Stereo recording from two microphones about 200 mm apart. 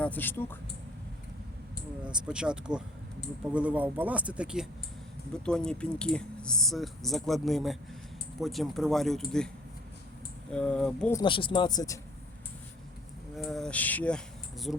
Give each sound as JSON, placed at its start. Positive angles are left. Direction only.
{"t": 0.0, "sound": "speech", "side_deg": 10}
{"t": 2.0, "sound": "speech", "side_deg": -5}
{"t": 10.5, "sound": "speech", "side_deg": 5}
{"t": 11.1, "sound": "speech", "side_deg": 25}
{"t": 13.3, "sound": "speech", "side_deg": 0}